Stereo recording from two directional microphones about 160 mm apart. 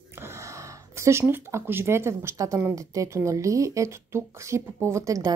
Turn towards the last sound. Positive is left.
turn(degrees=-20)  # may be behind; listen again after turning